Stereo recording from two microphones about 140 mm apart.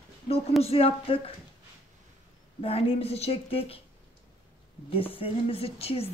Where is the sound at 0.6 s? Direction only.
45° left (ahead or behind).